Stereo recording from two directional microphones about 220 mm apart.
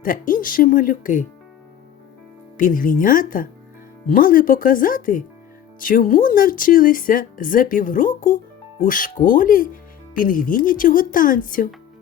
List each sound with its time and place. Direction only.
0.0 s speech: 40° left (ahead or behind)
2.6 s speech: 40° left (ahead or behind)